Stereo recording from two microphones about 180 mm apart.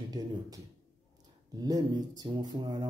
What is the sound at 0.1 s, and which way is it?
Speech, 20° right (ahead or behind).